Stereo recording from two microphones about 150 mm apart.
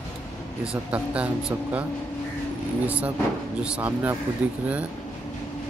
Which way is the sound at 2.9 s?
10° right (ahead or behind).